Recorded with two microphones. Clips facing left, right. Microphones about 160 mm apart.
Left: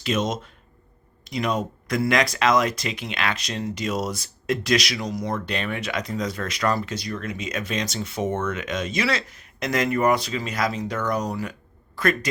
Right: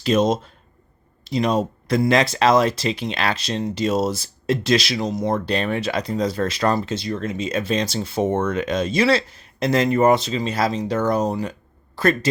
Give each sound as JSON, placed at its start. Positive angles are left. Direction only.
{"t": 0.0, "sound": "speech", "side_deg": -35}